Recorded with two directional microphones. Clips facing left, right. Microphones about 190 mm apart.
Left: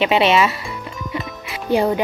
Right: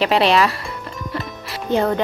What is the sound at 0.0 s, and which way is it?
Speech, centre (ahead or behind).